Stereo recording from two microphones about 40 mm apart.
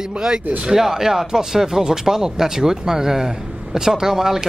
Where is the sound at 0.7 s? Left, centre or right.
Centre.